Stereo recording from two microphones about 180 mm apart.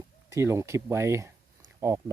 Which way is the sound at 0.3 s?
15° right (ahead or behind).